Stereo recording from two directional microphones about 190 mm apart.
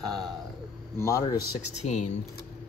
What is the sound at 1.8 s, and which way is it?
Speech, 35° left (ahead or behind).